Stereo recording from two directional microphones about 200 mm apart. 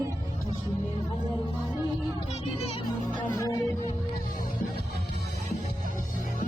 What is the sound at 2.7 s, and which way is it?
Music, 25° left (ahead or behind).